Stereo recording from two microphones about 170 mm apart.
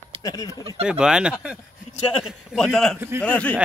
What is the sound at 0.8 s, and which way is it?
A man's voice, 5° right (ahead or behind).